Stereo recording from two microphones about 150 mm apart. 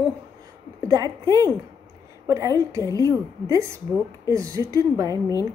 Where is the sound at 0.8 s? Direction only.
25° right (ahead or behind).